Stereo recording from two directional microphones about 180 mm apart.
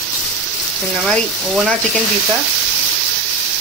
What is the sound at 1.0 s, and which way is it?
Speech, centre (ahead or behind).